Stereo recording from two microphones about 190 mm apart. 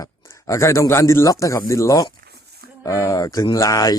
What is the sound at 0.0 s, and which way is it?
Speech, 15° left (ahead or behind).